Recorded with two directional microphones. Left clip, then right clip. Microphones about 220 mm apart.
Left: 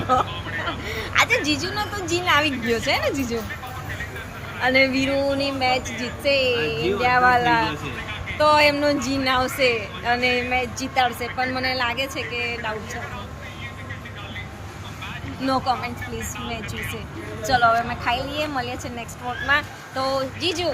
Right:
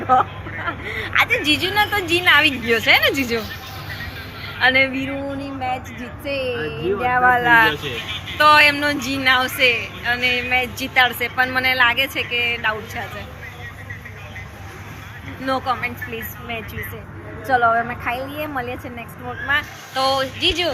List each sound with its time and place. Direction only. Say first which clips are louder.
0.1 s a woman's voice: right 5 dB; 10° left (ahead or behind)
4.6 s a woman's voice: right 2 dB; 15° left (ahead or behind)
15.4 s a woman's voice: right 1 dB; 10° left (ahead or behind)
17.4 s a woman's voice: right 2 dB; 10° left (ahead or behind)
18.2 s a woman's voice: left 1 dB; 35° left (ahead or behind)
18.6 s a woman's voice: right 1 dB; 10° left (ahead or behind)